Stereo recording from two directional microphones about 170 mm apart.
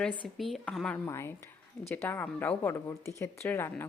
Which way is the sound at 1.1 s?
15° left (ahead or behind).